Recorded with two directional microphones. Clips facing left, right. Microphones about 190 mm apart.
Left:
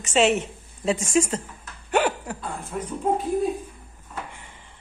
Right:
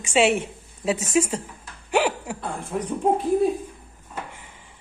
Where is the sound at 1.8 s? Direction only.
10° right (ahead or behind).